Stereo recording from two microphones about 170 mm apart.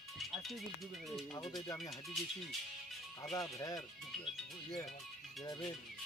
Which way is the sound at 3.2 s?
15° left (ahead or behind).